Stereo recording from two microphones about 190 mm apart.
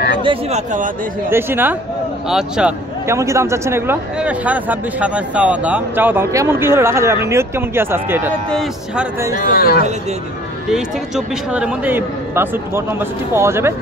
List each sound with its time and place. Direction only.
0.2 s speech: 30° right (ahead or behind)
1.3 s a man's voice: 10° right (ahead or behind)
3.1 s speech: 15° right (ahead or behind)
8.5 s a man's voice: centre (ahead or behind)
9.4 s speech: 50° left (ahead or behind)
10.7 s speech: 5° right (ahead or behind)